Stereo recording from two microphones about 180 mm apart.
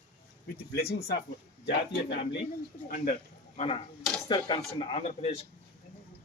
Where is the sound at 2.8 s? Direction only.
50° left (ahead or behind).